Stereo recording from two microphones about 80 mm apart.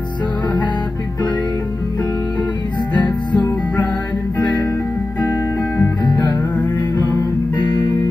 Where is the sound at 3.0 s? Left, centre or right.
Left.